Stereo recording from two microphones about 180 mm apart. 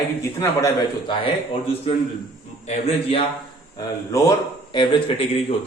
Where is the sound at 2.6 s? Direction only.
35° left (ahead or behind).